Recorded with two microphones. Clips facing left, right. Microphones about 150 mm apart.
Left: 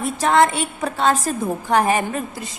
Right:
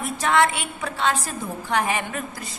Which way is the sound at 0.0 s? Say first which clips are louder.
Left 4 dB; 35° left (ahead or behind).